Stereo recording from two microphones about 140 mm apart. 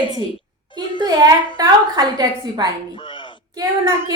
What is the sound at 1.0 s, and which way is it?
A woman's voice, 30° right (ahead or behind).